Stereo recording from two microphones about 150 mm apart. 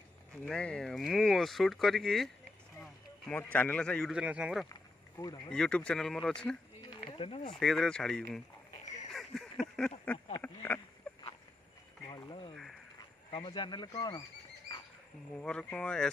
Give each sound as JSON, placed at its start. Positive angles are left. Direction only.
{"t": 0.5, "sound": "speech", "side_deg": 5}
{"t": 4.1, "sound": "speech", "side_deg": -5}
{"t": 5.2, "sound": "speech", "side_deg": 15}
{"t": 5.5, "sound": "speech", "side_deg": 5}
{"t": 6.8, "sound": "a sound", "side_deg": 35}
{"t": 7.5, "sound": "speech", "side_deg": 0}
{"t": 8.7, "sound": "a sound", "side_deg": 50}
{"t": 9.1, "sound": "a sound", "side_deg": 0}
{"t": 10.1, "sound": "speech", "side_deg": 35}
{"t": 10.4, "sound": "speech", "side_deg": 15}
{"t": 12.1, "sound": "a sound", "side_deg": 30}
{"t": 13.3, "sound": "speech", "side_deg": 35}
{"t": 15.4, "sound": "speech", "side_deg": 5}